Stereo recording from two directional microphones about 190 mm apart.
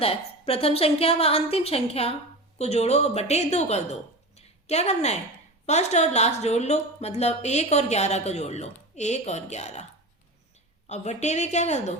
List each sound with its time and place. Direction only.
0.0 s speech: 30° left (ahead or behind)
4.4 s a sound: 35° left (ahead or behind)
5.6 s speech: 35° left (ahead or behind)
10.8 s speech: 35° left (ahead or behind)